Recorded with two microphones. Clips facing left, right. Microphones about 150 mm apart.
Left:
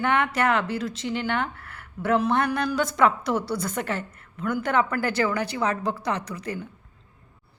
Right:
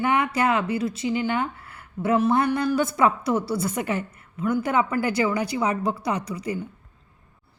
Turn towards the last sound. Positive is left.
turn(degrees=-10)  # may be behind; listen again after turning